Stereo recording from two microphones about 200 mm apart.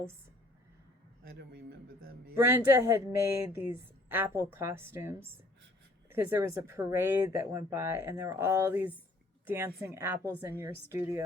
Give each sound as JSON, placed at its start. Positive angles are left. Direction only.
{"t": 1.2, "sound": "a man's voice", "side_deg": -50}
{"t": 2.3, "sound": "speech", "side_deg": -10}